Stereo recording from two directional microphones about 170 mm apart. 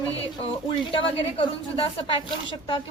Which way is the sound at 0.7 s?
30° left (ahead or behind).